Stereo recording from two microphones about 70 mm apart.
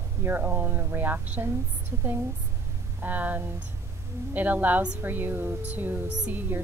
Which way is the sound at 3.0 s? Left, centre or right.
Right.